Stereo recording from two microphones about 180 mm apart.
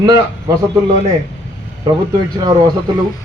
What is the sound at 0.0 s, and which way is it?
Speech, 20° right (ahead or behind).